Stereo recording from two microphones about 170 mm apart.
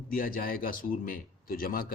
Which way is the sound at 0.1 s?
55° left (ahead or behind).